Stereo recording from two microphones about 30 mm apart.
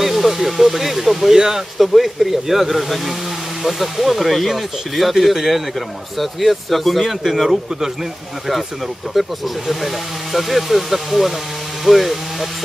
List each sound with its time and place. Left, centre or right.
0.0 s speech: centre
1.3 s a man's voice: centre
1.8 s a man's voice: centre
9.1 s speech: centre
10.3 s speech: centre